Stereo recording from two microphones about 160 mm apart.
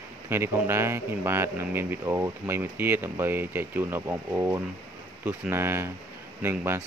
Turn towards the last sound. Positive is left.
turn(degrees=-15)  # may be behind; listen again after turning